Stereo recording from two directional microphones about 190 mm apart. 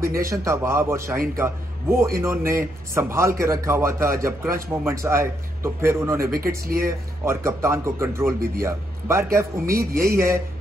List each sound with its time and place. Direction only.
0.2 s a man's voice: 15° right (ahead or behind)
6.3 s speech: 50° right (ahead or behind)
7.2 s a man's voice: 15° right (ahead or behind)